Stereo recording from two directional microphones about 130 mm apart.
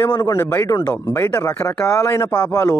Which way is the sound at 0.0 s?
25° left (ahead or behind).